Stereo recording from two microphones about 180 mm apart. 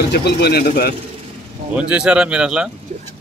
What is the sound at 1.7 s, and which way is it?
Speech, 5° right (ahead or behind).